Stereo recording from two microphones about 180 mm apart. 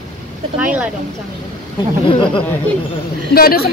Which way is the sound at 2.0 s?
30° left (ahead or behind).